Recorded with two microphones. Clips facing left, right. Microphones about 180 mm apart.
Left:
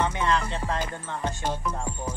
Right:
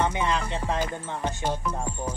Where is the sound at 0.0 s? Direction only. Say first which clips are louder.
Even; 15° right (ahead or behind).